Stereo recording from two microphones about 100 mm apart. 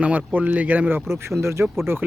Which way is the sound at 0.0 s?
15° right (ahead or behind).